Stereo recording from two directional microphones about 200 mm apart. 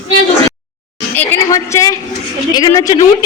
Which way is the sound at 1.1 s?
10° left (ahead or behind).